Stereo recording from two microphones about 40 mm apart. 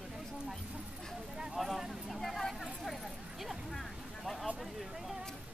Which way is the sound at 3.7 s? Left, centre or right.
Centre.